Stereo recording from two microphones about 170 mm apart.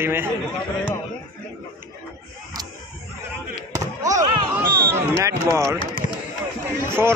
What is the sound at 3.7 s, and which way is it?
Basketball bounce, 20° right (ahead or behind).